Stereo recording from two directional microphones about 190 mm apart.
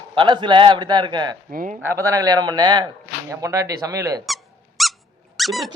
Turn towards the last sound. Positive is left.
turn(degrees=0)  # may be behind; listen again after turning